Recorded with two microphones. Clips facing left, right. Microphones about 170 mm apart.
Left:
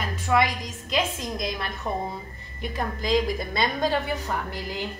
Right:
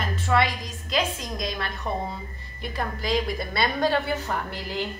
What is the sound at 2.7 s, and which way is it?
A woman's voice, 20° left (ahead or behind).